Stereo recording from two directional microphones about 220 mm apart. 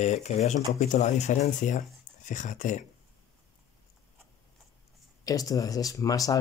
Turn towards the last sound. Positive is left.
turn(degrees=15)  # may be behind; listen again after turning